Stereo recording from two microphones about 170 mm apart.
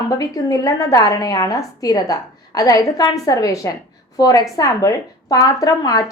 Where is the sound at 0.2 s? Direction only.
20° left (ahead or behind).